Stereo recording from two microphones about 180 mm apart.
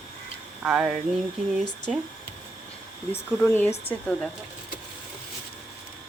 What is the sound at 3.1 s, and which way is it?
Speech, 10° left (ahead or behind).